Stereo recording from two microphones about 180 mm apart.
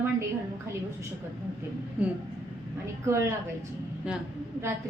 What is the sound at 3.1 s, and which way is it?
Speech, 15° right (ahead or behind).